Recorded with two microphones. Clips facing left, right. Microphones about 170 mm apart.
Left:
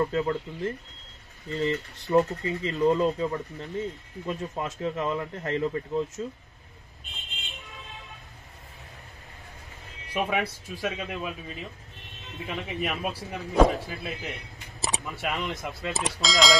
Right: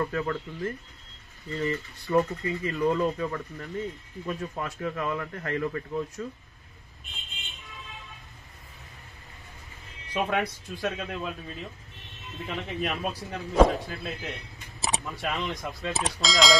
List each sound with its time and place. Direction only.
0.0 s speech: 20° left (ahead or behind)
10.1 s a man's voice: 5° left (ahead or behind)